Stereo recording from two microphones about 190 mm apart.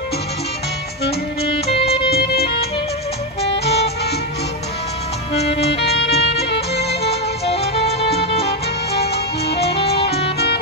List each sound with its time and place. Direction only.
1.7 s music: 30° left (ahead or behind)
2.1 s music: 55° left (ahead or behind)
5.3 s music: 35° left (ahead or behind)
5.8 s music: 60° left (ahead or behind)
7.0 s music: 30° left (ahead or behind)
8.9 s music: 55° left (ahead or behind)
9.6 s music: 30° left (ahead or behind)